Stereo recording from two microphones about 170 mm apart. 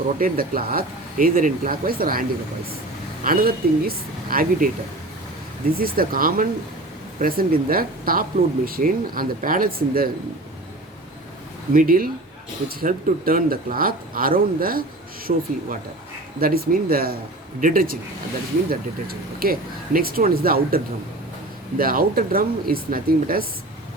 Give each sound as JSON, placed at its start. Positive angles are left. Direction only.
{"t": 0.2, "sound": "speech", "side_deg": -60}
{"t": 3.2, "sound": "speech", "side_deg": -60}
{"t": 11.7, "sound": "speech", "side_deg": -55}